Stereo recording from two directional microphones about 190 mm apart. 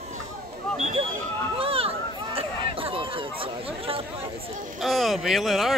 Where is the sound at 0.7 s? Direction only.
35° right (ahead or behind).